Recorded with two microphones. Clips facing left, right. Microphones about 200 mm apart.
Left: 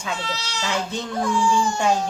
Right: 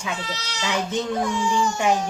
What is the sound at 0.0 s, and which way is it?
A child's voice, 15° right (ahead or behind).